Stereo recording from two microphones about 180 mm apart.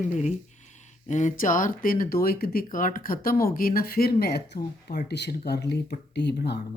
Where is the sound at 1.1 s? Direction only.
45° left (ahead or behind).